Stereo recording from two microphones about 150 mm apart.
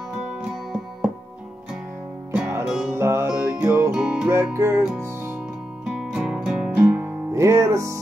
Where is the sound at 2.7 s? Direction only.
5° right (ahead or behind).